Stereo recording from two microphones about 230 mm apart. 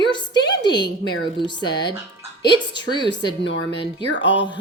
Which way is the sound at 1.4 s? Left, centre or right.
Centre.